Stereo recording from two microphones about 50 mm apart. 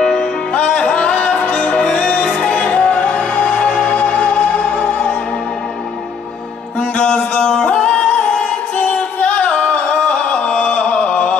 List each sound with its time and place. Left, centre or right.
0.0 s music: centre; by 3.5 s left
3.5 s music: left
3.9 s music: left
6.8 s music: left
7.6 s yodeling: left
8.7 s music: left
10.5 s a sound: left